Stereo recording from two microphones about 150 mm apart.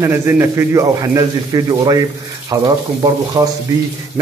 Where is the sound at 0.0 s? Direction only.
15° right (ahead or behind).